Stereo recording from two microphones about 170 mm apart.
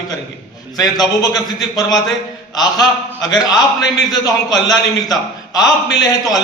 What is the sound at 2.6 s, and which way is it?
A man's voice, 20° left (ahead or behind).